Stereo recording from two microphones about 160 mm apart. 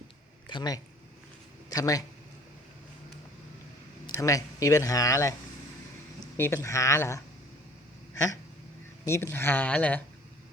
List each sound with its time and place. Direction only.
0.4 s speech: 25° left (ahead or behind)
4.1 s speech: 20° left (ahead or behind)
6.3 s speech: 15° left (ahead or behind)
9.0 s speech: 15° left (ahead or behind)